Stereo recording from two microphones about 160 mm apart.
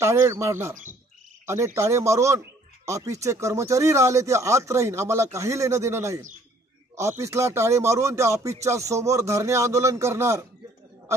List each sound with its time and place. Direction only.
0.0 s speech: 20° right (ahead or behind)